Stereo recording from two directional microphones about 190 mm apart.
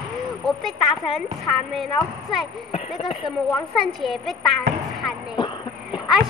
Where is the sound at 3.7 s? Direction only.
Centre (ahead or behind).